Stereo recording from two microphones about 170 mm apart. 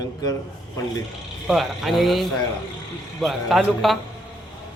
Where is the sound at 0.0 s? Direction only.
20° left (ahead or behind).